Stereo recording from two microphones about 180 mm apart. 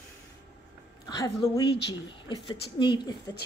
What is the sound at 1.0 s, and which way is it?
A woman's voice, 25° left (ahead or behind).